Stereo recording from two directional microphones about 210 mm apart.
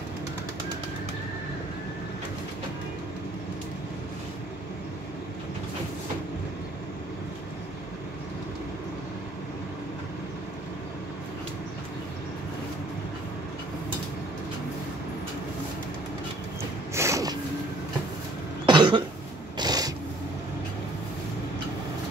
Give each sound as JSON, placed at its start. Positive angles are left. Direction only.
{"t": 16.9, "sound": "zipper", "side_deg": -15}
{"t": 18.7, "sound": "cough", "side_deg": -20}
{"t": 19.5, "sound": "a sound", "side_deg": -20}